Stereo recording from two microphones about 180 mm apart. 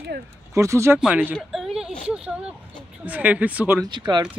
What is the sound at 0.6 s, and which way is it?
Speech, 15° right (ahead or behind).